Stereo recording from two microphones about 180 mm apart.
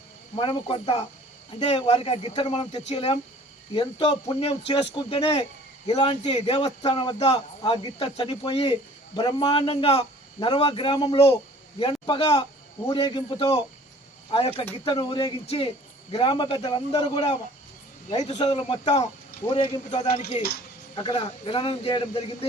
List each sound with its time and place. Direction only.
0.3 s speech: 30° left (ahead or behind)